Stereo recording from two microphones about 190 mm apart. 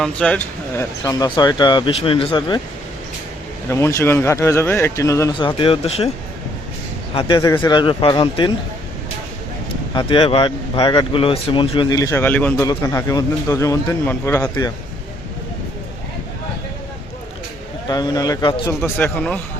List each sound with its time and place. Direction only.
0.0 s speech: 5° left (ahead or behind); by 2.6 s 25° left (ahead or behind)
3.7 s speech: 15° left (ahead or behind); by 6.1 s 30° left (ahead or behind)
7.1 s speech: 25° left (ahead or behind)
9.9 s speech: 25° left (ahead or behind)
17.8 s speech: 20° left (ahead or behind)
18.8 s speech: 10° left (ahead or behind)